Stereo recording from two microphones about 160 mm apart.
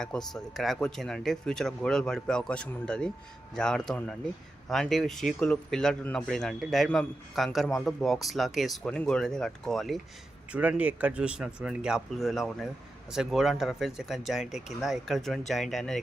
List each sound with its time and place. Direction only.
0.0 s speech: 5° left (ahead or behind)